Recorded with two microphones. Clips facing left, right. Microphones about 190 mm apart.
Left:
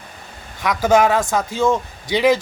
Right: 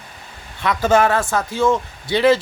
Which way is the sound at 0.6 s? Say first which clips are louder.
Left 1 dB; 10° left (ahead or behind).